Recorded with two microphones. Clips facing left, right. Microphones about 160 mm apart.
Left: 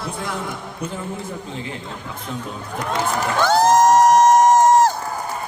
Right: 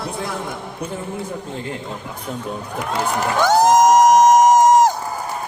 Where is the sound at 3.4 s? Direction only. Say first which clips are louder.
Right 1 dB; 15° right (ahead or behind).